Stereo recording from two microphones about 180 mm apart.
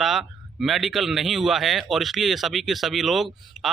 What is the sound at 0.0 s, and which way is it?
A man's voice, 5° right (ahead or behind).